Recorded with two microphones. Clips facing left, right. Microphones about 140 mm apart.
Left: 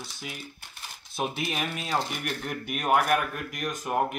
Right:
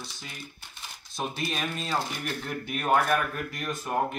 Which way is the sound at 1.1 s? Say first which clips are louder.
Left 2 dB; 15° left (ahead or behind).